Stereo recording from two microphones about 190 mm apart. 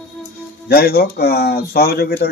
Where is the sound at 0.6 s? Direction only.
55° left (ahead or behind).